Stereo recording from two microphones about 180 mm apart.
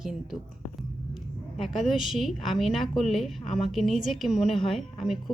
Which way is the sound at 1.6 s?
Centre (ahead or behind).